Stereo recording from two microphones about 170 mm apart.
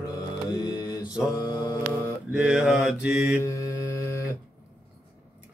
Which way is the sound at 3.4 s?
20° left (ahead or behind).